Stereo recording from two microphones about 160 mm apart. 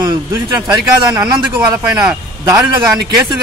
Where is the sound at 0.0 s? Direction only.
25° right (ahead or behind).